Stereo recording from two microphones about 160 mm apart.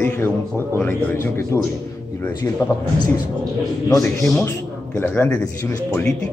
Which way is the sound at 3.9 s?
15° left (ahead or behind).